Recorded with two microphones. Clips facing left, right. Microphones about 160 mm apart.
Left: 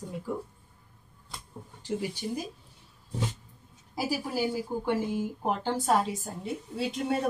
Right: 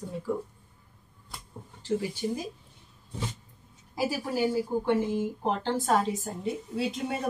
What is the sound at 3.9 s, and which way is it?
A woman's voice, 10° left (ahead or behind).